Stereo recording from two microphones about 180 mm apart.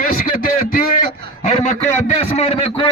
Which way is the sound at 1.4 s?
40° left (ahead or behind).